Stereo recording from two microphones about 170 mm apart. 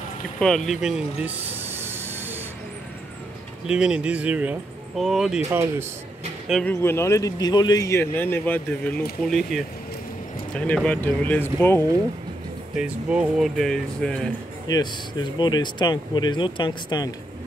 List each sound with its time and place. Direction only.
0.7 s snort: 5° right (ahead or behind)
3.6 s speech: 5° right (ahead or behind)
5.5 s speech: 15° right (ahead or behind)
6.6 s speech: 15° left (ahead or behind)
12.7 s speech: 5° right (ahead or behind)
14.7 s speech: 25° left (ahead or behind)